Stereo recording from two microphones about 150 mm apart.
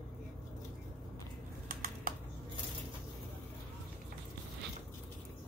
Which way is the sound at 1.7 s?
75° right (ahead or behind).